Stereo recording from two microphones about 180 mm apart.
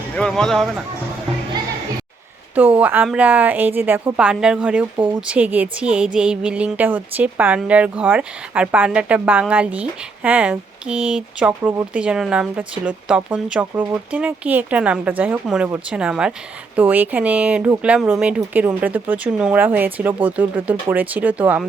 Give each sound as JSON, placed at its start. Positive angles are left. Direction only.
{"t": 0.2, "sound": "speech", "side_deg": 5}
{"t": 2.6, "sound": "speech", "side_deg": -10}